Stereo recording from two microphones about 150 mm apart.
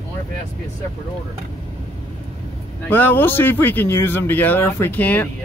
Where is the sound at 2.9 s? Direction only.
15° left (ahead or behind).